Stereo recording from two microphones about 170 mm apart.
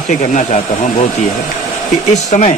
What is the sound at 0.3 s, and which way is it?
Speech, 45° left (ahead or behind).